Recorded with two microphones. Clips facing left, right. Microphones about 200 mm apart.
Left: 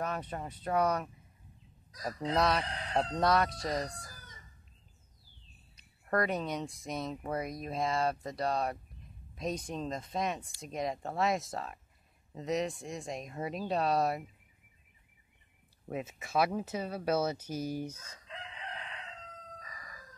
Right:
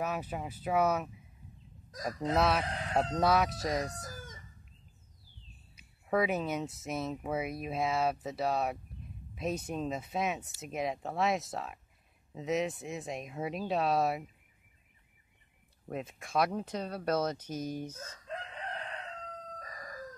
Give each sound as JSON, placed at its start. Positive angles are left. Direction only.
{"t": 0.0, "sound": "speech", "side_deg": -5}
{"t": 2.3, "sound": "speech", "side_deg": -5}
{"t": 2.6, "sound": "chicken", "side_deg": -50}
{"t": 3.2, "sound": "speech", "side_deg": -5}
{"t": 4.0, "sound": "chicken", "side_deg": -45}
{"t": 5.8, "sound": "speech", "side_deg": -5}
{"t": 15.9, "sound": "speech", "side_deg": 5}
{"t": 18.2, "sound": "chicken", "side_deg": -45}
{"t": 19.6, "sound": "crowing", "side_deg": -40}